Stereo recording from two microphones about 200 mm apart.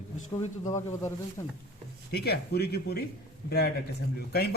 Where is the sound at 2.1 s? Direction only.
55° left (ahead or behind).